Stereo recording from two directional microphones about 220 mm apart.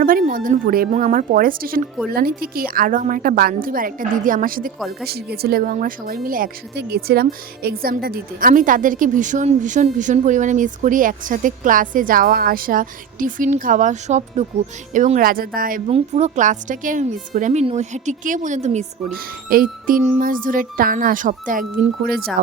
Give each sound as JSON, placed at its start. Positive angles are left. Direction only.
{"t": 0.0, "sound": "speech", "side_deg": -40}
{"t": 15.9, "sound": "speech", "side_deg": -30}